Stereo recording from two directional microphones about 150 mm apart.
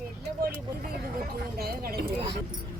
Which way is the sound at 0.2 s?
90° right.